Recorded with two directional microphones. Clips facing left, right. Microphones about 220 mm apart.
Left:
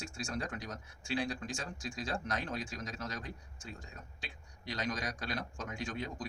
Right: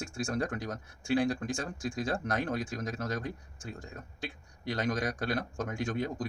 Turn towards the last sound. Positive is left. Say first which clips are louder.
# right 7 dB
turn(degrees=-50)  # may be behind; listen again after turning